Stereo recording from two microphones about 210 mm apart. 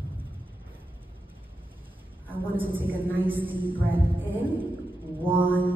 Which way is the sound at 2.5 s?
10° right (ahead or behind).